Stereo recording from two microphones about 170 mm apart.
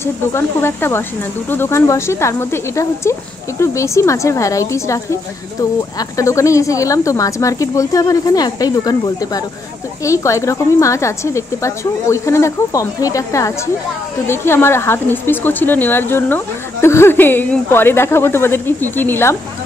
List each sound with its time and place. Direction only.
0.0 s a woman's voice: 15° left (ahead or behind)